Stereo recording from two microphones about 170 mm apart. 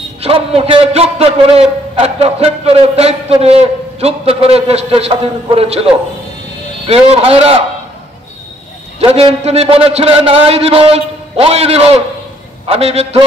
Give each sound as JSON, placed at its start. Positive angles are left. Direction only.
{"t": 0.2, "sound": "a man's voice", "side_deg": -35}
{"t": 6.9, "sound": "a man's voice", "side_deg": -35}
{"t": 9.0, "sound": "a man's voice", "side_deg": -35}